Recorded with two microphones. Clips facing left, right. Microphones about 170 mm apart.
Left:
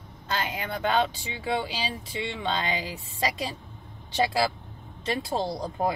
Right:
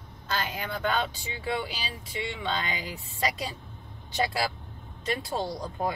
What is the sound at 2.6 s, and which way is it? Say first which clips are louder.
Speech: left 4 dB; 25° left (ahead or behind).